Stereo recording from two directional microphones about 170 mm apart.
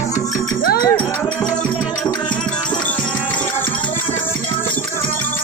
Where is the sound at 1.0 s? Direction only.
10° left (ahead or behind).